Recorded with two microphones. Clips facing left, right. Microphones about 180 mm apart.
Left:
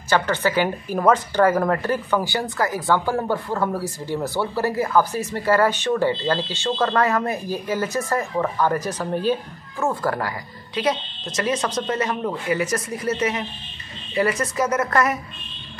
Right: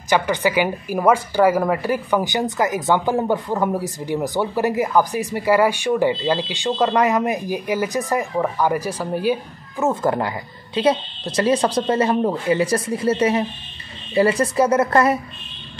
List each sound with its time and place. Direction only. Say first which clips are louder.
0.1 s a woman's voice: right 2 dB; 15° right (ahead or behind)